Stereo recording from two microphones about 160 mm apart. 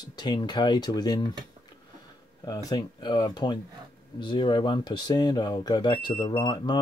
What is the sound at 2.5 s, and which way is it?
Speech, 25° left (ahead or behind).